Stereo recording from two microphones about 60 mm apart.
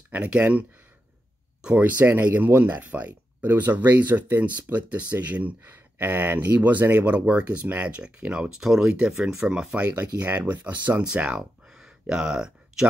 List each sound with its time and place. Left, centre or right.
0.1 s speech: right
1.8 s speech: right
5.6 s speech: right; by 9.8 s centre
9.8 s speech: right
11.1 s a sound: centre